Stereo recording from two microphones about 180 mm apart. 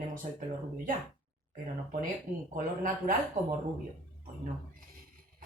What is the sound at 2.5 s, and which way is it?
A woman's voice, 50° right (ahead or behind).